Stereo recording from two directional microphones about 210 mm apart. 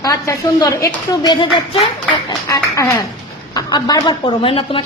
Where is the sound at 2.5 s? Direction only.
15° left (ahead or behind).